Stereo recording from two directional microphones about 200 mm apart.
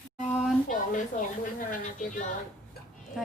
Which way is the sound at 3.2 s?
Centre (ahead or behind).